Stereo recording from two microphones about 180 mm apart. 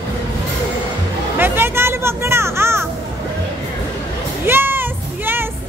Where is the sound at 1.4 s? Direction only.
10° right (ahead or behind).